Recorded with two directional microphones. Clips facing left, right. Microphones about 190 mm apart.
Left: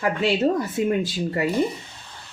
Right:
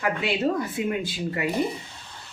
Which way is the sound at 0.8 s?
35° left (ahead or behind).